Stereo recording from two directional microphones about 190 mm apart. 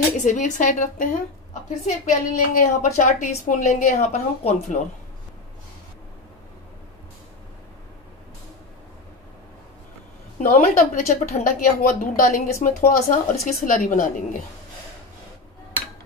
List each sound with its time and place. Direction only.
0.2 s a woman's voice: 40° left (ahead or behind)
10.4 s a woman's voice: 45° left (ahead or behind)